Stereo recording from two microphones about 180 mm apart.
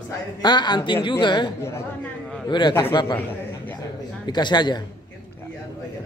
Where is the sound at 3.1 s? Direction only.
10° left (ahead or behind).